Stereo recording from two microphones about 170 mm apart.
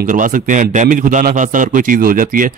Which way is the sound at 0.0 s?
50° right (ahead or behind).